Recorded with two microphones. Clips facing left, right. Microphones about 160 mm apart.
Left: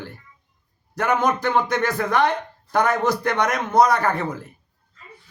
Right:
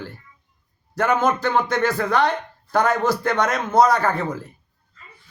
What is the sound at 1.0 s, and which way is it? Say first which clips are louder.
Speech: right 1 dB; 15° left (ahead or behind).